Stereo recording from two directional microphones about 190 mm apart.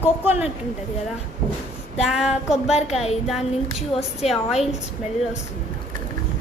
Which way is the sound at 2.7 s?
35° left (ahead or behind).